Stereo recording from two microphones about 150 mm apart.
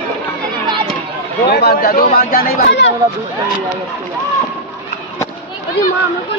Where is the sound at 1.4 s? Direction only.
90° left.